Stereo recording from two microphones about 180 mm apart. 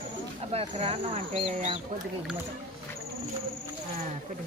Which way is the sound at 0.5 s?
35° right (ahead or behind).